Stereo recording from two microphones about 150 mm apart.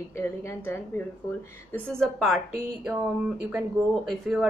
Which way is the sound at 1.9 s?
5° left (ahead or behind).